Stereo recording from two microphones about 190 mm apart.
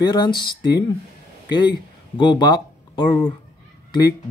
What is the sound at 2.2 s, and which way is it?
Speech, 25° left (ahead or behind).